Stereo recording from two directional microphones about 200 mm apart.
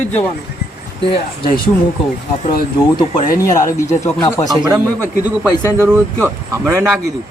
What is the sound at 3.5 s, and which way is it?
Speech, 15° left (ahead or behind).